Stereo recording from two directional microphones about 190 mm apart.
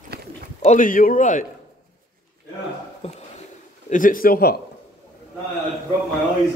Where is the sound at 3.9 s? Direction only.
45° left (ahead or behind).